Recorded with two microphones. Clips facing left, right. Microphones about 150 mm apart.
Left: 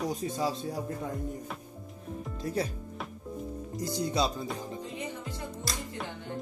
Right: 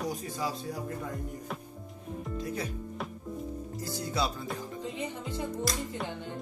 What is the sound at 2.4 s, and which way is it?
Music, 35° left (ahead or behind).